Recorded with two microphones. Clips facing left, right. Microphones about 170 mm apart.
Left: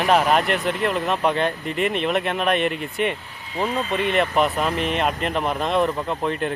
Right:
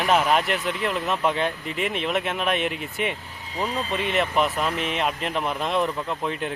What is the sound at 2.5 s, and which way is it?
Speech, 55° left (ahead or behind).